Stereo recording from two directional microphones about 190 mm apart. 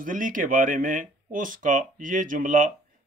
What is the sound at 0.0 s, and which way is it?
Speech, 45° right (ahead or behind).